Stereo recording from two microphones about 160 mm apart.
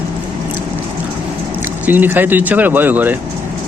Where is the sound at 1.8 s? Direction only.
10° right (ahead or behind).